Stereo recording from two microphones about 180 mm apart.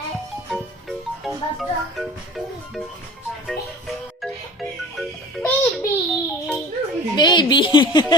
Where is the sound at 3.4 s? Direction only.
Centre (ahead or behind).